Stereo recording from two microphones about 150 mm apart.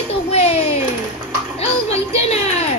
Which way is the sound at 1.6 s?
45° left (ahead or behind).